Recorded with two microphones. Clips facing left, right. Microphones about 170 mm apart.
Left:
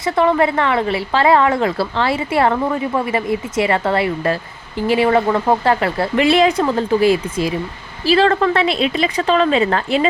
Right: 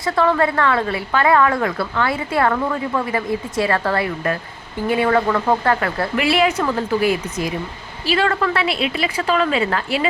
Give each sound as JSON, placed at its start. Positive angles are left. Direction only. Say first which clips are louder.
{"t": 0.0, "sound": "speech", "louder": "left 2 dB", "side_deg": 20}
{"t": 8.0, "sound": "a woman's voice", "louder": "left 5 dB", "side_deg": 35}